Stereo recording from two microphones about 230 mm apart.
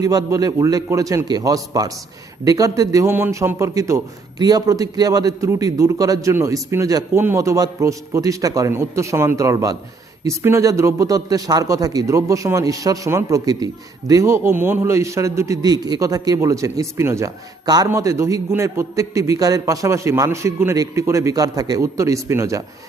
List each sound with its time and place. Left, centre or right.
0.0 s a man's voice: centre